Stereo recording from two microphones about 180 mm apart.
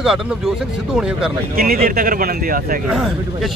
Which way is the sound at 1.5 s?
55° right (ahead or behind).